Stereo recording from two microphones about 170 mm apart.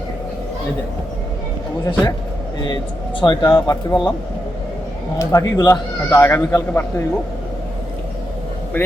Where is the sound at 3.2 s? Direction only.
25° left (ahead or behind).